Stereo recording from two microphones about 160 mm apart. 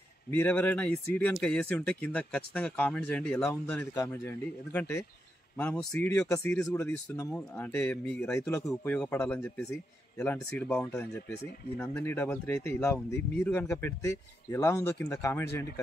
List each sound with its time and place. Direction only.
0.3 s speech: 10° left (ahead or behind)
5.6 s speech: 5° left (ahead or behind)
5.9 s speech: 20° left (ahead or behind)
8.3 s speech: 20° left (ahead or behind)